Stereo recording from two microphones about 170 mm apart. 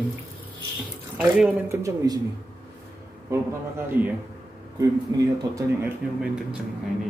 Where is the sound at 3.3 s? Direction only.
10° right (ahead or behind).